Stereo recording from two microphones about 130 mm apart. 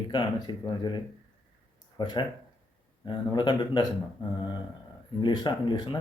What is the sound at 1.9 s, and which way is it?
Speech, 35° left (ahead or behind).